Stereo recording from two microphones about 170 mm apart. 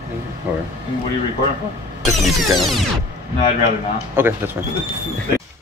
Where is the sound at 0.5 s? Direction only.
10° right (ahead or behind).